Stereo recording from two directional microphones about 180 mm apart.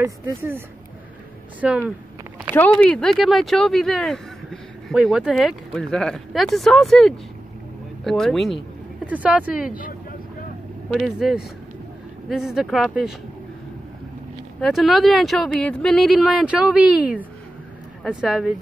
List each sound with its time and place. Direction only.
0.0 s speech: 15° right (ahead or behind)
1.6 s speech: 10° right (ahead or behind)
2.5 s speech: 10° left (ahead or behind); by 9.7 s 5° right (ahead or behind)
9.7 s speech: 50° left (ahead or behind)
10.9 s speech: centre (ahead or behind)
14.6 s speech: centre (ahead or behind)